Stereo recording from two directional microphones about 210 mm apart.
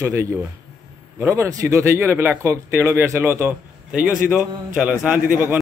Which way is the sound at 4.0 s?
40° right (ahead or behind).